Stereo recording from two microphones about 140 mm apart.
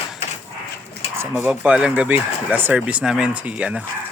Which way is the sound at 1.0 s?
40° left (ahead or behind).